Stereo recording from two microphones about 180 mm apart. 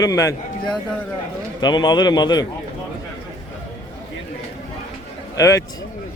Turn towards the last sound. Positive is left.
turn(degrees=20)  # may be behind; listen again after turning